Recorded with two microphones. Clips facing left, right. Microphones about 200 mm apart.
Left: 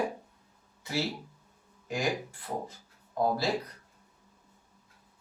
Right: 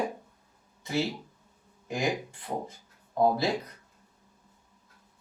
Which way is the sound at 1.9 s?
20° right (ahead or behind).